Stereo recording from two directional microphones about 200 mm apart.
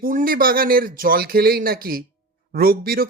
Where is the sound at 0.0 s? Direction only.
45° right (ahead or behind).